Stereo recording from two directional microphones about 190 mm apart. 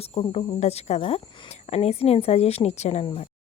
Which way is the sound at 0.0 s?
30° left (ahead or behind).